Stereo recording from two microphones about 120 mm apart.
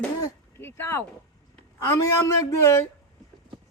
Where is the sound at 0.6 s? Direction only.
20° left (ahead or behind).